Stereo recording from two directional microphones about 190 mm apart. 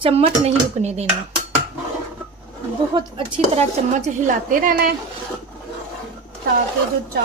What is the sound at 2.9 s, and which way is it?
Speech, 25° right (ahead or behind).